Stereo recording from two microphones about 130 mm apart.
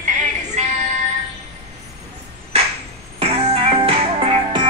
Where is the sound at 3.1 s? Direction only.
50° right (ahead or behind).